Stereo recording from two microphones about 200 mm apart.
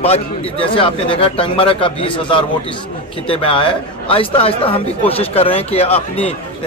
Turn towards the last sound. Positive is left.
turn(degrees=30)  # may be behind; listen again after turning